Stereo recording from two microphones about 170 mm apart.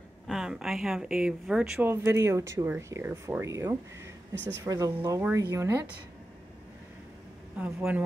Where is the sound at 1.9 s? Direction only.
15° right (ahead or behind).